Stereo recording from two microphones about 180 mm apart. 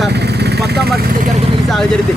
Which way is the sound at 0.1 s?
65° right (ahead or behind).